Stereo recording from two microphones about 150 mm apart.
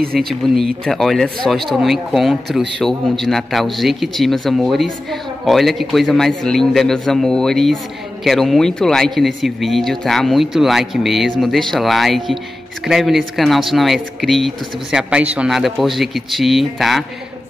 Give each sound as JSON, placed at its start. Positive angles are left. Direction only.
{"t": 0.0, "sound": "speech", "side_deg": -85}
{"t": 0.3, "sound": "a man's voice", "side_deg": 0}